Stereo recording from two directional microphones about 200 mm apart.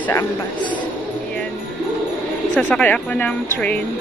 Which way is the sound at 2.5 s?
5° left (ahead or behind).